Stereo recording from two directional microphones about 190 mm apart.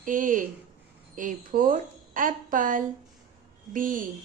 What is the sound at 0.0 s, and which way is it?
A woman's voice, 45° right (ahead or behind).